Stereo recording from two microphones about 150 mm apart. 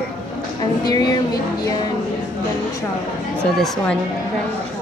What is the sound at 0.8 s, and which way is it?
Speech, 25° left (ahead or behind).